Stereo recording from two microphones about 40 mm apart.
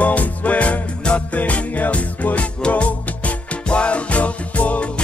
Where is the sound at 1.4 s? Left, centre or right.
Left.